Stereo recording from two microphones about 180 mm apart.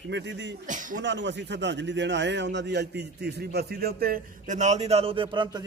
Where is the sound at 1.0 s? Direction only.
75° right (ahead or behind); by 5.6 s 25° right (ahead or behind).